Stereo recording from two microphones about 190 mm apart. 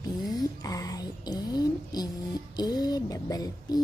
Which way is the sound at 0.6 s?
20° left (ahead or behind).